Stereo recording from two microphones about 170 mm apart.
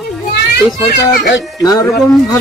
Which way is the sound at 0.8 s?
70° left (ahead or behind).